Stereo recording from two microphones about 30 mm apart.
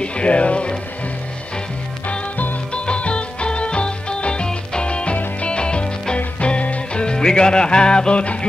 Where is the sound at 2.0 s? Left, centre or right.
Left.